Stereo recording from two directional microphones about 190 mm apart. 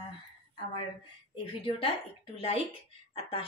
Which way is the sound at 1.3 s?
30° left (ahead or behind).